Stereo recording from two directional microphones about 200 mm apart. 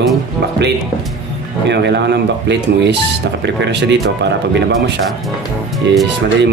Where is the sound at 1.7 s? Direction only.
60° right (ahead or behind).